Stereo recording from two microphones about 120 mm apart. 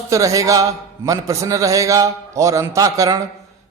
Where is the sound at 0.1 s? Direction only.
30° right (ahead or behind).